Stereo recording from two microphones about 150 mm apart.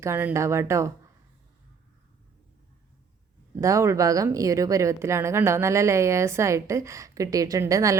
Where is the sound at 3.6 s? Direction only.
20° right (ahead or behind).